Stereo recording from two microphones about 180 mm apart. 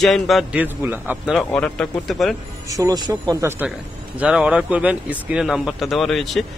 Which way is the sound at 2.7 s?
20° right (ahead or behind).